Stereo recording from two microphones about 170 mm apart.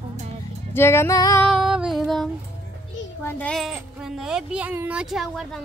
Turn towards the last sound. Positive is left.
turn(degrees=0)  # may be behind; listen again after turning